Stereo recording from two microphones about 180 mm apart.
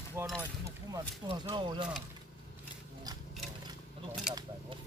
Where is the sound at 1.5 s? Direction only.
25° right (ahead or behind).